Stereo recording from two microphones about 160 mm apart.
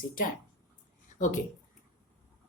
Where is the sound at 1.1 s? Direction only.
50° left (ahead or behind).